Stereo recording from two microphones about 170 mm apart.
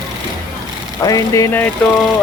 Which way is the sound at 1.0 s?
20° left (ahead or behind).